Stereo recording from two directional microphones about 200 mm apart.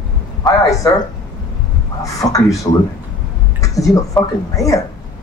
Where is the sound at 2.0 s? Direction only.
15° left (ahead or behind).